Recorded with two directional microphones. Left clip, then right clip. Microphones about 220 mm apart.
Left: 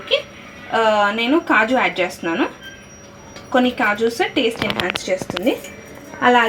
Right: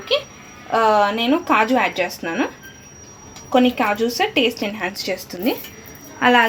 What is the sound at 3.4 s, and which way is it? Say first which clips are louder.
Speech: even; 30° right (ahead or behind).